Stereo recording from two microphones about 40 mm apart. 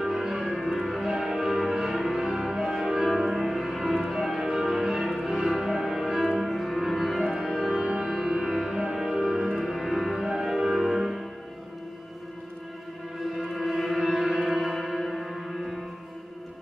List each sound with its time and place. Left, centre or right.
0.0 s music: centre
8.0 s music: centre
13.6 s music: centre